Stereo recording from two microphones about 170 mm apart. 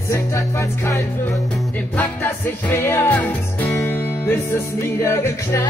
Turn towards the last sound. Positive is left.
turn(degrees=15)  # may be behind; listen again after turning